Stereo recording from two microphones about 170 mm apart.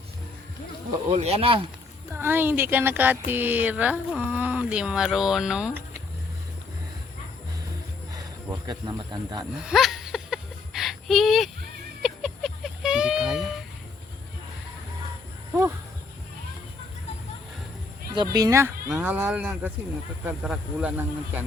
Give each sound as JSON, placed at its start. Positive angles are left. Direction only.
{"t": 1.1, "sound": "speech", "side_deg": -35}
{"t": 2.1, "sound": "speech", "side_deg": -15}
{"t": 8.1, "sound": "speech", "side_deg": -25}
{"t": 9.6, "sound": "a sound", "side_deg": 0}
{"t": 18.1, "sound": "speech", "side_deg": -25}